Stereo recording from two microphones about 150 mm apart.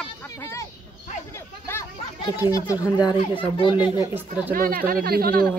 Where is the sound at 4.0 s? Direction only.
15° right (ahead or behind).